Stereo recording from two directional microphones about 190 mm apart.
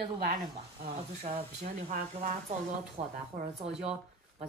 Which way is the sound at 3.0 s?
30° right (ahead or behind).